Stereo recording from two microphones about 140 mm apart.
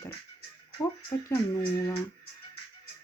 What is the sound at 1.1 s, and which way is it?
Speech, 25° left (ahead or behind).